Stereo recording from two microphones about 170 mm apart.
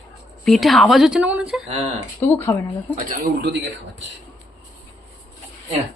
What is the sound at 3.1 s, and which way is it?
Speech, 65° right (ahead or behind).